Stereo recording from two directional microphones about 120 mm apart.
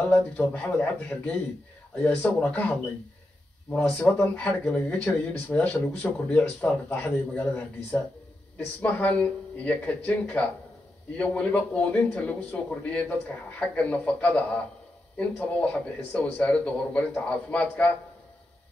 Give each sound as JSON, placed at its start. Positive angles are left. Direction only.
{"t": 0.0, "sound": "a man's voice", "side_deg": 15}
{"t": 4.1, "sound": "a man's voice", "side_deg": 10}